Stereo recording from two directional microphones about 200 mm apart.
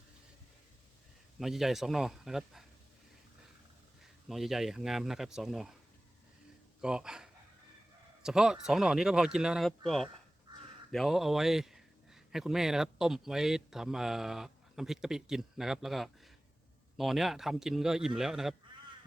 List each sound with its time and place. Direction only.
1.4 s speech: centre (ahead or behind)
4.3 s speech: centre (ahead or behind)
6.8 s speech: 5° right (ahead or behind)